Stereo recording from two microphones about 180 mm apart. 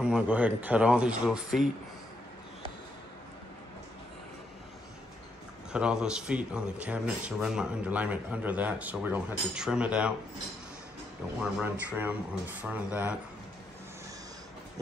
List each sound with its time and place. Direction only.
0.0 s speech: 5° right (ahead or behind)
5.7 s a man's voice: 5° right (ahead or behind)
11.6 s a man's voice: 10° right (ahead or behind)